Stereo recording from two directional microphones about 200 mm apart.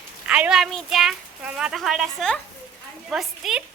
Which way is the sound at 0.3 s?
5° right (ahead or behind).